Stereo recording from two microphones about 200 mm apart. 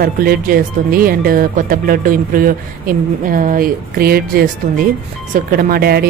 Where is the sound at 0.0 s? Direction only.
50° right (ahead or behind).